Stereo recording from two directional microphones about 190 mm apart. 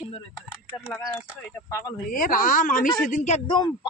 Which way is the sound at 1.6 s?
15° left (ahead or behind).